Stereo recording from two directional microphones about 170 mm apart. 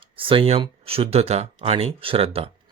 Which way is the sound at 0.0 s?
30° right (ahead or behind).